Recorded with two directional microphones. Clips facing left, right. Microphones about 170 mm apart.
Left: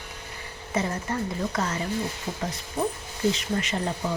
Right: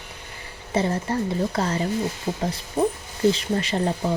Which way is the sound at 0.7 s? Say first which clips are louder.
Right 5 dB; 30° right (ahead or behind).